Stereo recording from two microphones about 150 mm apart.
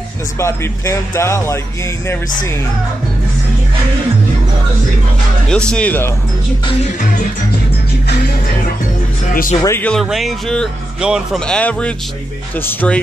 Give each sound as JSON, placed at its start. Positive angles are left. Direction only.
{"t": 0.4, "sound": "speech", "side_deg": 20}
{"t": 5.5, "sound": "speech", "side_deg": 5}
{"t": 7.0, "sound": "music", "side_deg": 65}
{"t": 9.3, "sound": "speech", "side_deg": 70}
{"t": 9.7, "sound": "speech", "side_deg": 10}
{"t": 10.0, "sound": "music", "side_deg": 0}
{"t": 11.4, "sound": "speech", "side_deg": 5}